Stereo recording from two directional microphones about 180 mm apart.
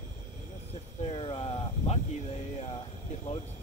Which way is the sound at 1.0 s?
30° left (ahead or behind).